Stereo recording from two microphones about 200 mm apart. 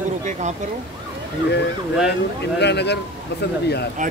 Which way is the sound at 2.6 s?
60° left (ahead or behind).